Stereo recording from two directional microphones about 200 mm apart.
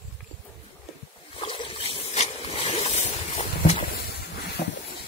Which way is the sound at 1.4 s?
25° left (ahead or behind).